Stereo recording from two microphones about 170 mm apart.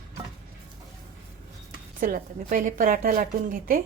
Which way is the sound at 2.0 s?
55° right (ahead or behind).